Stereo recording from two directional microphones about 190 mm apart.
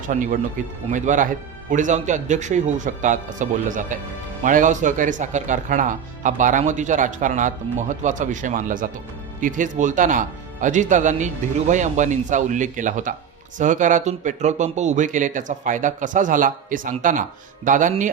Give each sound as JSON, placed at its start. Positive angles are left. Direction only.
{"t": 0.1, "sound": "speech", "side_deg": -45}